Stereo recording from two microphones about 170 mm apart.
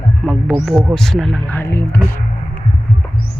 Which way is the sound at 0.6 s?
Centre (ahead or behind).